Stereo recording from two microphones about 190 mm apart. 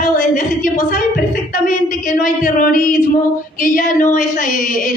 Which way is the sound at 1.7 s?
45° left (ahead or behind).